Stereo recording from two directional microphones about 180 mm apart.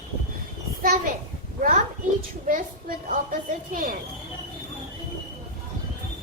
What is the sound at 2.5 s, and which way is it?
A woman's voice, 50° right (ahead or behind).